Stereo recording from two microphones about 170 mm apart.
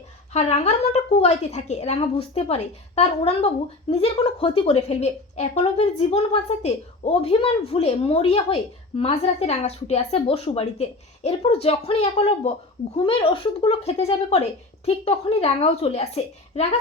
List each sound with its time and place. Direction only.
0.3 s a woman's voice: 40° left (ahead or behind)